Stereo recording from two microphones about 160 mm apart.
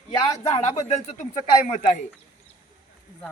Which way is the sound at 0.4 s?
40° left (ahead or behind).